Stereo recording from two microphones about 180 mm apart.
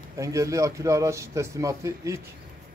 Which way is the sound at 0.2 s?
15° right (ahead or behind).